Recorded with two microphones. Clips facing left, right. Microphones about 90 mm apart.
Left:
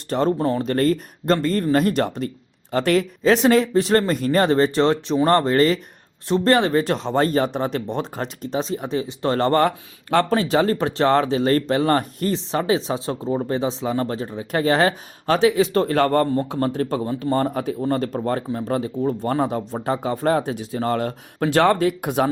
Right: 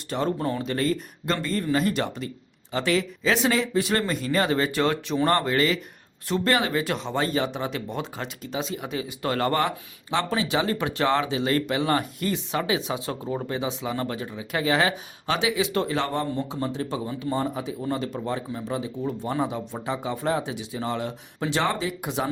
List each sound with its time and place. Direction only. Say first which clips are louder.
0.1 s speech: left 6 dB; 35° left (ahead or behind)
0.6 s speech: left 6 dB; 45° left (ahead or behind)
10.1 s speech: left 7 dB; 50° left (ahead or behind)